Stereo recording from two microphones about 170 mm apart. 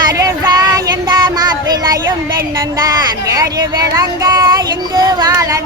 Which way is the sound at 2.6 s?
20° right (ahead or behind).